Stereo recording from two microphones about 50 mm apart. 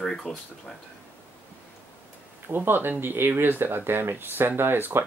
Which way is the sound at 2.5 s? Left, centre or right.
Right.